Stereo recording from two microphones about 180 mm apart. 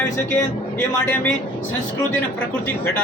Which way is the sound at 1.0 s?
10° left (ahead or behind).